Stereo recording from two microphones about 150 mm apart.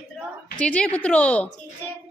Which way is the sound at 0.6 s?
5° left (ahead or behind).